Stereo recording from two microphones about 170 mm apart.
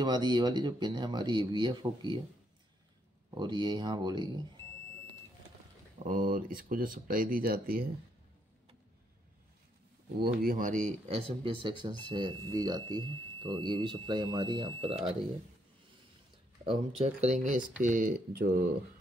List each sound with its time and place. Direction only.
0.0 s speech: 25° right (ahead or behind)
3.3 s speech: 25° right (ahead or behind)
5.9 s speech: 50° right (ahead or behind)
10.2 s speech: 60° right (ahead or behind); by 15.1 s 35° right (ahead or behind)
16.6 s speech: 40° right (ahead or behind); by 18.6 s 60° right (ahead or behind)